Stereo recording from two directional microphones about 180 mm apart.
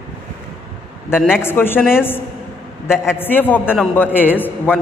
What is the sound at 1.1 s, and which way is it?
Speech, centre (ahead or behind).